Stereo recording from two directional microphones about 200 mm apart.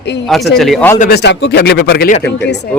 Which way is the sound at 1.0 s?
55° left (ahead or behind).